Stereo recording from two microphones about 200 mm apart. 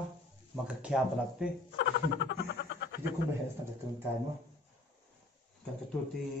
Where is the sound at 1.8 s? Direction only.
60° left (ahead or behind).